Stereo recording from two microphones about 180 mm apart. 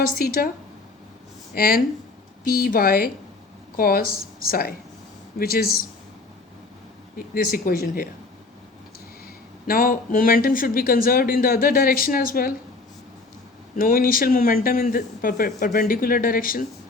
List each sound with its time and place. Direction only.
0.0 s a woman's voice: 55° left (ahead or behind)
1.5 s a woman's voice: 55° left (ahead or behind)
7.3 s speech: 55° left (ahead or behind)
9.6 s speech: 55° left (ahead or behind)
13.7 s speech: 55° left (ahead or behind)